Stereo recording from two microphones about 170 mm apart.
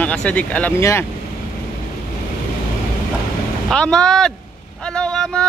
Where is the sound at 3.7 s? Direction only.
5° left (ahead or behind).